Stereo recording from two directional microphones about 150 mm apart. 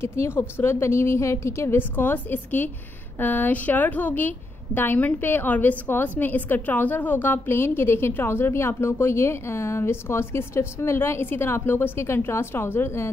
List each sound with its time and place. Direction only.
0.0 s a woman's voice: 15° left (ahead or behind)